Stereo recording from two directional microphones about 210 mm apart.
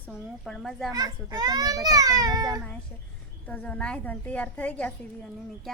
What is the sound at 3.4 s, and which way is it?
A woman's voice, 5° left (ahead or behind).